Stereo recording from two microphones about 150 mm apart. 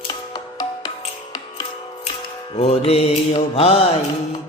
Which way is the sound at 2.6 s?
40° left (ahead or behind).